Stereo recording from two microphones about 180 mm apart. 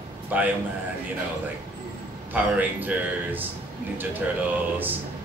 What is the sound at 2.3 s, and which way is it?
A man's voice, 10° right (ahead or behind).